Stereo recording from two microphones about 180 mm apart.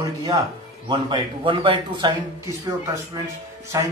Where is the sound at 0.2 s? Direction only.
20° right (ahead or behind).